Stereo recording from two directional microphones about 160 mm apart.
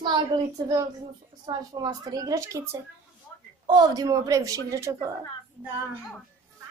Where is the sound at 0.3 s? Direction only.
30° right (ahead or behind).